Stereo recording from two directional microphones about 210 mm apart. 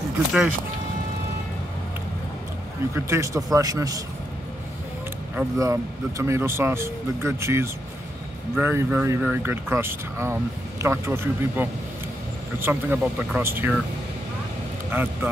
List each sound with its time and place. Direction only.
2.9 s speech: 15° right (ahead or behind)
5.3 s speech: 10° right (ahead or behind)
14.9 s speech: 10° right (ahead or behind)